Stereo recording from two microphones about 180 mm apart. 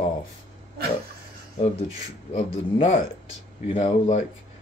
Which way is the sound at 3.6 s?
30° left (ahead or behind).